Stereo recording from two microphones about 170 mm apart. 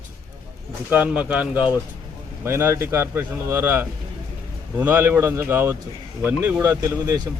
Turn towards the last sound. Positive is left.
turn(degrees=-15)  # may be behind; listen again after turning